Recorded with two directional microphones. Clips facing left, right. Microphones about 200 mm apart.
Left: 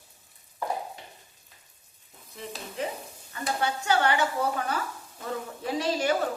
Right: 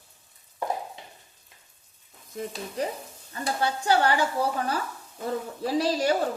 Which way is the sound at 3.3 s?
35° right (ahead or behind).